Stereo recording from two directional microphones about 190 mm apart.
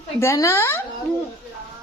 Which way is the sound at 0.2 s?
15° left (ahead or behind).